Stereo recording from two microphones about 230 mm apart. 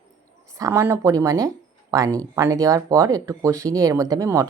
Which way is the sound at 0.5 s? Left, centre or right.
Centre.